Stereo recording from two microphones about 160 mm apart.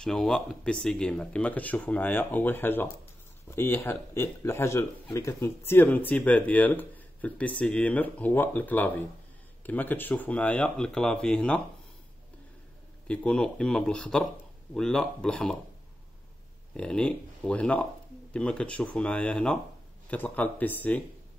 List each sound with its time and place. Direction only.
0.0 s speech: 5° left (ahead or behind)
13.0 s speech: 5° left (ahead or behind)
16.7 s speech: 5° left (ahead or behind)